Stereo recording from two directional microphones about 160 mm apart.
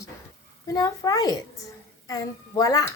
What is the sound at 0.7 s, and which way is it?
A child's voice, 20° left (ahead or behind).